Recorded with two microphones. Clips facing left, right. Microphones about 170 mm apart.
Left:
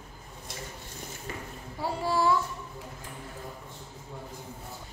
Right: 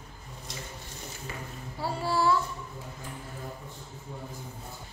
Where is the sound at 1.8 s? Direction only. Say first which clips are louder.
Even; 20° left (ahead or behind).